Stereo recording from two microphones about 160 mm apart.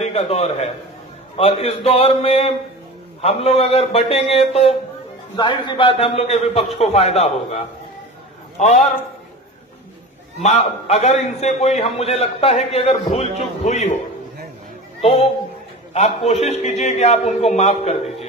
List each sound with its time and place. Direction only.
0.0 s a man's voice: 40° left (ahead or behind)
10.4 s a man's voice: 45° left (ahead or behind)
15.0 s a man's voice: 40° left (ahead or behind)